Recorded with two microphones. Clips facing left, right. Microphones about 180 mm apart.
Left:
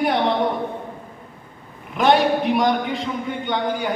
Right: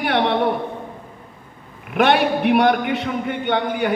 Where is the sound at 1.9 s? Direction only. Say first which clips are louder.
Even; 65° right (ahead or behind).